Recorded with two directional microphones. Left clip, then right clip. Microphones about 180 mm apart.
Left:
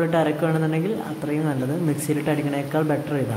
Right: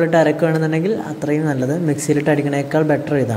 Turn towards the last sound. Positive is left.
turn(degrees=-15)  # may be behind; listen again after turning